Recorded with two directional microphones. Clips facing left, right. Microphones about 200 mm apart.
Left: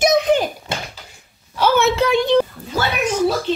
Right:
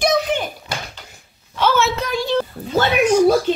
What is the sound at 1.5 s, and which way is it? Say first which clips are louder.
Speech: left 2 dB; 15° left (ahead or behind).